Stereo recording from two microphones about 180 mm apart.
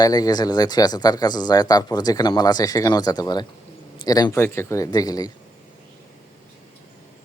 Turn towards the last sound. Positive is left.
turn(degrees=20)  # may be behind; listen again after turning